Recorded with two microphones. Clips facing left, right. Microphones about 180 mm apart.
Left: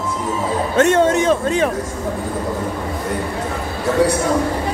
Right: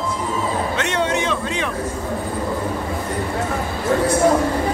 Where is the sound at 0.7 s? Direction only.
45° left (ahead or behind).